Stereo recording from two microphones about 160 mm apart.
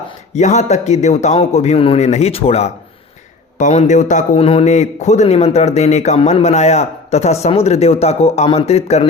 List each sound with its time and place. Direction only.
0.3 s a man's voice: 45° left (ahead or behind)